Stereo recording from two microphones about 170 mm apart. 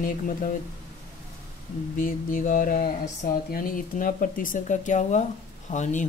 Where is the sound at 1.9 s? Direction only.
50° left (ahead or behind).